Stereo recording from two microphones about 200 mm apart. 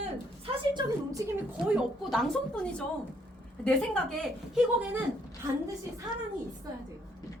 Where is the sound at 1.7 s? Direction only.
Centre (ahead or behind).